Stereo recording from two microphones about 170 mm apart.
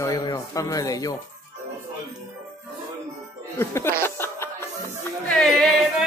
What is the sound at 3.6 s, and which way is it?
Chuckle, 15° left (ahead or behind).